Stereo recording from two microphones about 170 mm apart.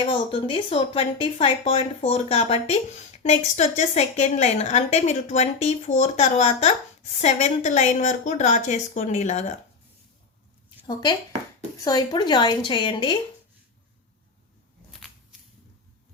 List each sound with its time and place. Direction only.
0.0 s a woman's voice: 30° left (ahead or behind)
10.8 s a woman's voice: 25° left (ahead or behind)